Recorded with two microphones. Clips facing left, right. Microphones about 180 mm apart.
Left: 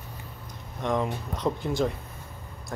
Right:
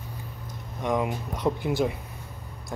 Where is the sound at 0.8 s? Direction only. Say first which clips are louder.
Right 1 dB; 10° right (ahead or behind).